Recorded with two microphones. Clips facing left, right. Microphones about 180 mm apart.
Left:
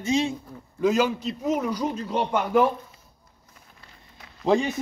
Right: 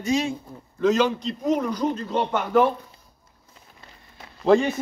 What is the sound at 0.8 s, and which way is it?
A man's voice, 10° left (ahead or behind).